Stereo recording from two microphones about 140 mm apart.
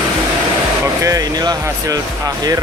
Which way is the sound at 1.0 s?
25° right (ahead or behind).